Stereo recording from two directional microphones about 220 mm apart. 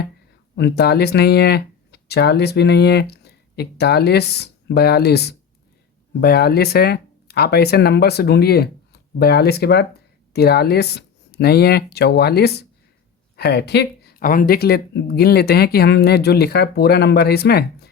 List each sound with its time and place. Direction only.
0.5 s speech: 45° left (ahead or behind)